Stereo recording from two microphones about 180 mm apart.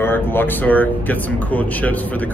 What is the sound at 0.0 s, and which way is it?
Speech, 10° left (ahead or behind).